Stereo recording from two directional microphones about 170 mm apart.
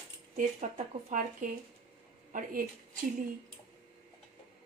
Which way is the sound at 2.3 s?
50° right (ahead or behind).